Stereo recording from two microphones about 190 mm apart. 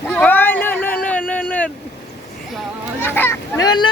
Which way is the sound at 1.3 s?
10° left (ahead or behind).